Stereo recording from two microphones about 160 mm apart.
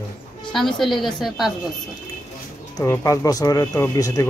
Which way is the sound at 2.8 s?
20° left (ahead or behind).